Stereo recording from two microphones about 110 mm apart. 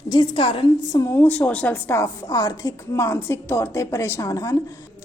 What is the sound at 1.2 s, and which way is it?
A woman's voice, 15° left (ahead or behind).